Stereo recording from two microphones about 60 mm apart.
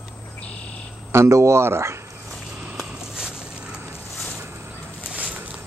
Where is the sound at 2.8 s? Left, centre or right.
Centre.